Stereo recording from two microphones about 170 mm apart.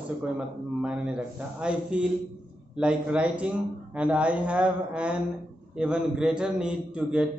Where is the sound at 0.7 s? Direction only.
5° right (ahead or behind).